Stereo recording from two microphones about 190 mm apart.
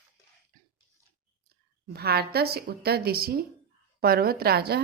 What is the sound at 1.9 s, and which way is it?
A woman's voice, 55° right (ahead or behind).